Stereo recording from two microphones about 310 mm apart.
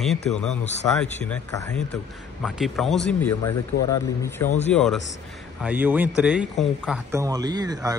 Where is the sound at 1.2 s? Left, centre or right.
Centre.